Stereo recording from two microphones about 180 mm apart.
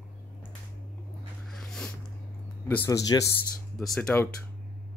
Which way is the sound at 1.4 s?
5° left (ahead or behind).